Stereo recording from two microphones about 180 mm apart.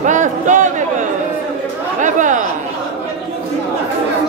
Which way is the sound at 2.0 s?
45° right (ahead or behind).